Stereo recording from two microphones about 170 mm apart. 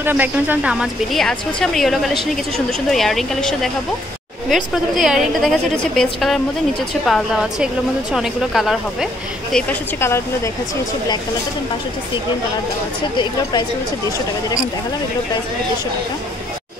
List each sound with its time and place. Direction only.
0.0 s a woman's voice: 10° right (ahead or behind); by 10.5 s 15° left (ahead or behind)
13.2 s a woman's voice: 25° left (ahead or behind)